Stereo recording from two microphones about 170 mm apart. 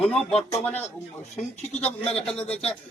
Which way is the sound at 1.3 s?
40° left (ahead or behind).